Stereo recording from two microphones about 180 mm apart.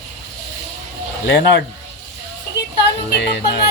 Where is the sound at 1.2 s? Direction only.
70° left (ahead or behind).